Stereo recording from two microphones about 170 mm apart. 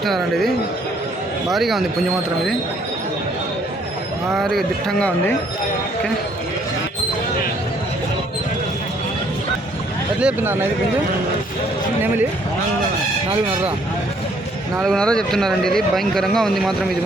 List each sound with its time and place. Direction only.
0.0 s speech: centre (ahead or behind)
4.4 s speech: centre (ahead or behind)
10.2 s speech: 10° right (ahead or behind)
14.8 s speech: 5° left (ahead or behind)